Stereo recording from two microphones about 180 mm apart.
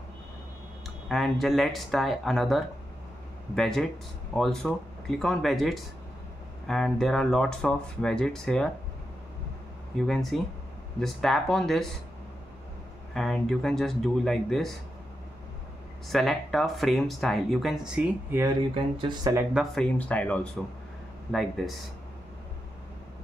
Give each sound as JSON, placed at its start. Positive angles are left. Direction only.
{"t": 0.8, "sound": "speech", "side_deg": 0}
{"t": 9.9, "sound": "speech", "side_deg": 0}
{"t": 13.1, "sound": "speech", "side_deg": 0}
{"t": 16.1, "sound": "speech", "side_deg": 0}
{"t": 18.9, "sound": "speech", "side_deg": -25}
{"t": 19.5, "sound": "speech", "side_deg": 0}